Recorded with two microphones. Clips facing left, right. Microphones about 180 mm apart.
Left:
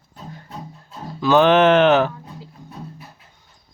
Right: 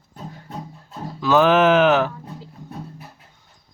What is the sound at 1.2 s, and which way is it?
Speech, centre (ahead or behind).